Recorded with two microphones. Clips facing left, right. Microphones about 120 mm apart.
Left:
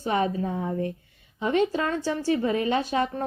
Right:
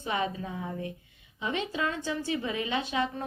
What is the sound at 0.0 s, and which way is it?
A woman's voice, 40° left (ahead or behind).